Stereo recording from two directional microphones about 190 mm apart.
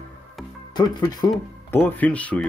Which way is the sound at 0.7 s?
20° left (ahead or behind).